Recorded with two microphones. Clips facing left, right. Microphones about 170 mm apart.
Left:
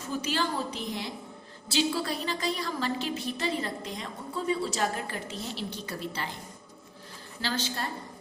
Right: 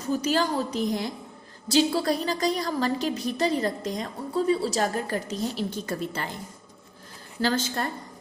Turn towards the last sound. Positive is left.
turn(degrees=-50)  # may be behind; listen again after turning